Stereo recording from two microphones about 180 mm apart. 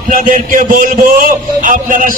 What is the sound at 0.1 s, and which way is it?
A man's voice, 45° right (ahead or behind).